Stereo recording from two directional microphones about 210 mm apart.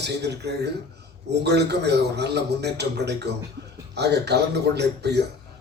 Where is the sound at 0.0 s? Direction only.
50° right (ahead or behind).